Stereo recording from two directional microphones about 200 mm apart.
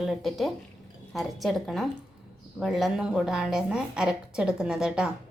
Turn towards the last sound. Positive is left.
turn(degrees=-5)  # may be behind; listen again after turning